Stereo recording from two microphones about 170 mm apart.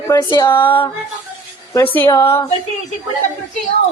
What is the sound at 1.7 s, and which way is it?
Speech, 15° left (ahead or behind).